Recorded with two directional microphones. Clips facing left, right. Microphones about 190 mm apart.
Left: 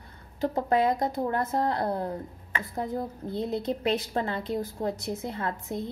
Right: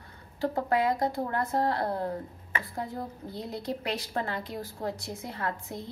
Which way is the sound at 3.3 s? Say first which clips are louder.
Left 6 dB; 25° left (ahead or behind).